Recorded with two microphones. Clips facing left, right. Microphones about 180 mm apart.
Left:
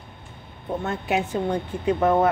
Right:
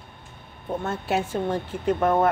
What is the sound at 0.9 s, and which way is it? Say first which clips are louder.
Speech: left 1 dB; 15° left (ahead or behind).